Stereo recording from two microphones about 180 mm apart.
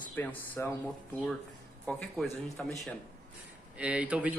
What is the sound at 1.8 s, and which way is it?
Speech, centre (ahead or behind).